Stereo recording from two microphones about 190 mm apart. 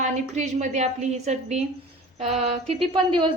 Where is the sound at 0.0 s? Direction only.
40° right (ahead or behind).